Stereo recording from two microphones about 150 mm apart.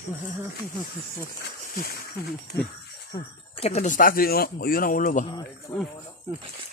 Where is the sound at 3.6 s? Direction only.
50° left (ahead or behind).